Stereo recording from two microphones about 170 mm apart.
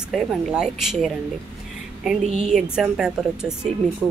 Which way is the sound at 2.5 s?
5° right (ahead or behind).